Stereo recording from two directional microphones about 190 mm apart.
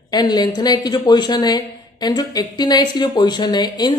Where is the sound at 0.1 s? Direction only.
20° left (ahead or behind).